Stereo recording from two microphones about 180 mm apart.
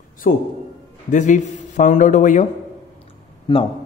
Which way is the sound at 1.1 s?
45° left (ahead or behind).